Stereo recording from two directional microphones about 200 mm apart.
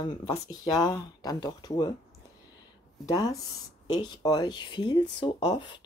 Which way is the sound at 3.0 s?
20° left (ahead or behind).